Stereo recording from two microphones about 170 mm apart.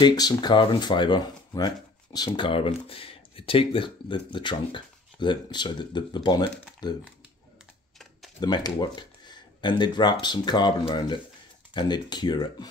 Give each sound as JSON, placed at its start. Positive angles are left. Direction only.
{"t": 0.0, "sound": "speech", "side_deg": 25}
{"t": 8.4, "sound": "speech", "side_deg": 25}